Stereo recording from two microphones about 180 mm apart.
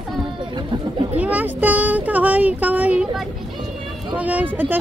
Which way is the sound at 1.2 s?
10° right (ahead or behind).